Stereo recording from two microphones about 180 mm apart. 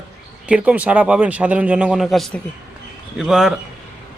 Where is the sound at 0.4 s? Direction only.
5° right (ahead or behind).